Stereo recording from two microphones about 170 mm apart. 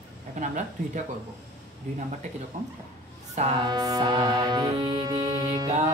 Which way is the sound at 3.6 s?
25° right (ahead or behind).